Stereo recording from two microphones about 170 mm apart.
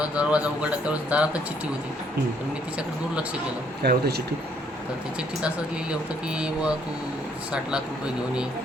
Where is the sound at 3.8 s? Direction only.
70° right (ahead or behind).